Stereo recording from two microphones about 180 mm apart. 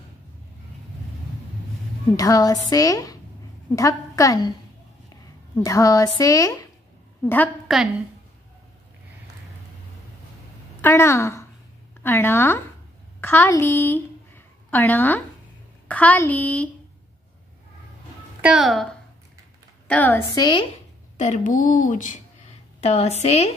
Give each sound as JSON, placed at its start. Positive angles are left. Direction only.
{"t": 2.1, "sound": "a woman's voice", "side_deg": 20}
{"t": 10.8, "sound": "a woman's voice", "side_deg": 15}
{"t": 18.4, "sound": "a woman's voice", "side_deg": -5}
{"t": 20.3, "sound": "a woman's voice", "side_deg": 25}
{"t": 21.2, "sound": "a woman's voice", "side_deg": 45}